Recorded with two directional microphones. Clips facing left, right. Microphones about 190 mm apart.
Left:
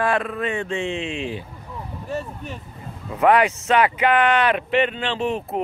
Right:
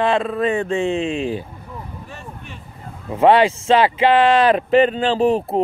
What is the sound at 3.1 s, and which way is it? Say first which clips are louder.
Speech: right 4 dB; 30° right (ahead or behind).